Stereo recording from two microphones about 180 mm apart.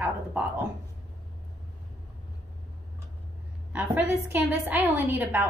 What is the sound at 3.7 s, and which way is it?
A woman's voice, 10° right (ahead or behind).